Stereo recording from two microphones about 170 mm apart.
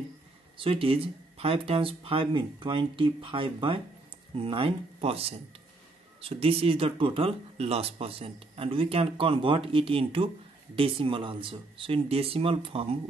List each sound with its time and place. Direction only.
0.6 s speech: 35° right (ahead or behind)